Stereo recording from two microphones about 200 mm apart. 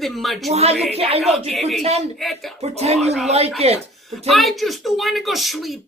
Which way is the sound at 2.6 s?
35° right (ahead or behind).